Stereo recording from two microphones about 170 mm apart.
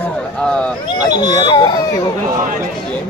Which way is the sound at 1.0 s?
25° left (ahead or behind).